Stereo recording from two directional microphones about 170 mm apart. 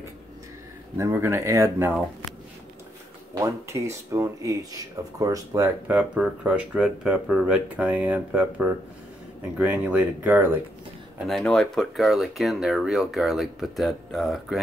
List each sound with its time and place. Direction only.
0.9 s speech: 15° right (ahead or behind)
3.3 s speech: 20° right (ahead or behind)
11.2 s speech: centre (ahead or behind)